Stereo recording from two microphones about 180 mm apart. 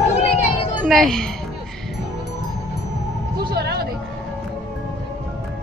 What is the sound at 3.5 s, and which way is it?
Music, 65° right (ahead or behind).